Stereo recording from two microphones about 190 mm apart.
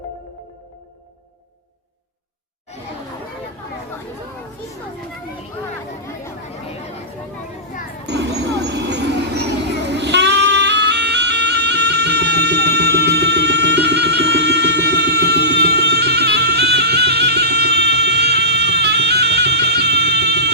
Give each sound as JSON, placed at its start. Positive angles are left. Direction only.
{"t": 8.0, "sound": "vehicle", "side_deg": -65}